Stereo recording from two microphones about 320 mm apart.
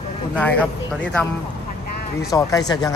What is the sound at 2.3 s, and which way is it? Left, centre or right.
Speech, centre.